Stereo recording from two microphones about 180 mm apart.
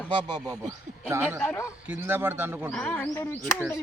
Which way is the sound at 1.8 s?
10° right (ahead or behind).